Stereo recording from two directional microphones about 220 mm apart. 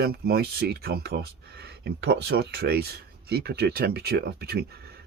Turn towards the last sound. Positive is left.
turn(degrees=-45)  # may be behind; listen again after turning